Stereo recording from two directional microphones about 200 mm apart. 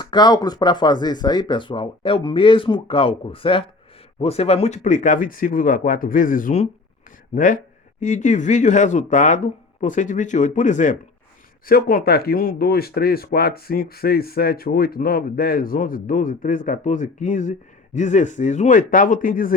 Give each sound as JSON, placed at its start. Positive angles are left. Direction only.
{"t": 0.0, "sound": "speech", "side_deg": 20}